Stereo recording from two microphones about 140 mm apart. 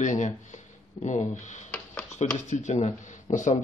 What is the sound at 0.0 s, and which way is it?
Speech, 60° left (ahead or behind).